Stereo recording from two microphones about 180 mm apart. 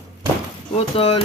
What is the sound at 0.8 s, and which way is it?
Speech, 30° left (ahead or behind).